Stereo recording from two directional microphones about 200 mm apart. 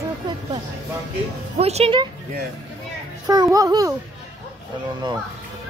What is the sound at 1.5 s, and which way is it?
Speech, 30° right (ahead or behind).